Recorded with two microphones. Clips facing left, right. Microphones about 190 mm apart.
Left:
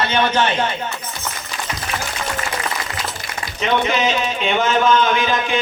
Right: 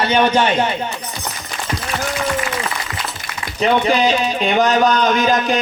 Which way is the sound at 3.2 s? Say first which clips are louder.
Even; 55° right (ahead or behind).